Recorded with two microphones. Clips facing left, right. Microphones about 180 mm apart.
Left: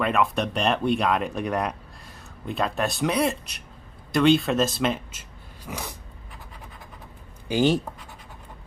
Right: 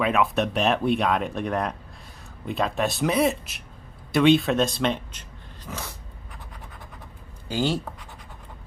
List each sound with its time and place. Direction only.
0.0 s speech: centre (ahead or behind)
7.4 s speech: 15° left (ahead or behind)